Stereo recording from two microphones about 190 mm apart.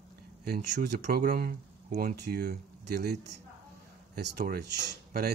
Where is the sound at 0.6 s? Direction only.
40° right (ahead or behind).